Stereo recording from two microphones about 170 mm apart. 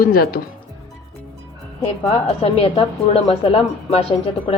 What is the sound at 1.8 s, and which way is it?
A woman's voice, 35° left (ahead or behind).